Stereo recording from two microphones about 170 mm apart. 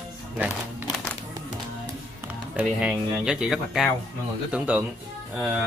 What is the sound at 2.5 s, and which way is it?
A man's voice, 5° right (ahead or behind).